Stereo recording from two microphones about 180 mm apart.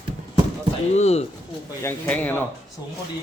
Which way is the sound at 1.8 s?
10° left (ahead or behind).